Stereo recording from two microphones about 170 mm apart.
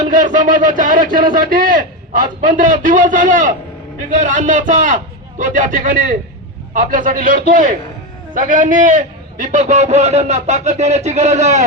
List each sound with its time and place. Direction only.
0.0 s a man's voice: 50° right (ahead or behind)